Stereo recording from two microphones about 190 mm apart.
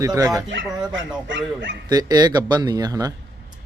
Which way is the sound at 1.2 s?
75° right (ahead or behind).